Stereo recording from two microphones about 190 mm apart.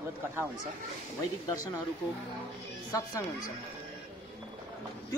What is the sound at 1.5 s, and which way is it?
Speech, 20° left (ahead or behind).